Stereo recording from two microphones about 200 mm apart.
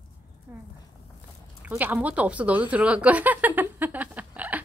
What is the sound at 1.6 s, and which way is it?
A woman's voice, 10° right (ahead or behind).